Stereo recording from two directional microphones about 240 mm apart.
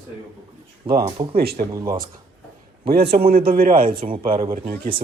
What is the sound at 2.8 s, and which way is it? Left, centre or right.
A man's voice, right.